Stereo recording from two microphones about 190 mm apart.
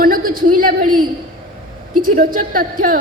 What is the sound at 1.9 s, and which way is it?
A man's voice, 50° right (ahead or behind).